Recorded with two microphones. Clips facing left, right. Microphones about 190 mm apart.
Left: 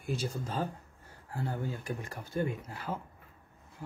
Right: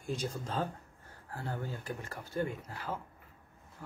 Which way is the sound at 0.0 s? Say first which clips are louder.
Left 1 dB; 5° left (ahead or behind).